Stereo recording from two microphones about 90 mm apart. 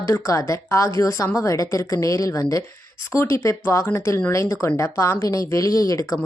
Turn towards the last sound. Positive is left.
turn(degrees=40)  # may be behind; listen again after turning